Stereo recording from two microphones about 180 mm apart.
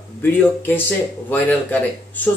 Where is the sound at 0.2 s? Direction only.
10° left (ahead or behind).